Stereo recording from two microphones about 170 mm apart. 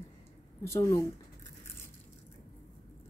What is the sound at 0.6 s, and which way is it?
Speech, 15° left (ahead or behind).